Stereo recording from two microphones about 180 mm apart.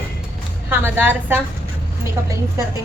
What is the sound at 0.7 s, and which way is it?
Speech, 10° right (ahead or behind).